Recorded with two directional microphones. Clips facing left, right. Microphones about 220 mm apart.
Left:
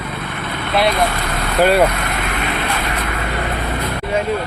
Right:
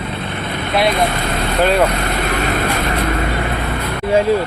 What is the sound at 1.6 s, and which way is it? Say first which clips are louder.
Speech: left 2 dB; 10° left (ahead or behind).